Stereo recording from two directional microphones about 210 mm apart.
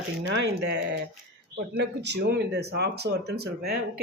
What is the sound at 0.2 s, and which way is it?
Speech, 65° right (ahead or behind).